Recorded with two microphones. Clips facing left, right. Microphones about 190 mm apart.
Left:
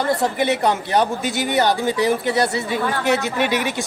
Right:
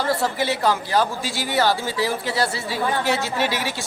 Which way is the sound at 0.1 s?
20° left (ahead or behind).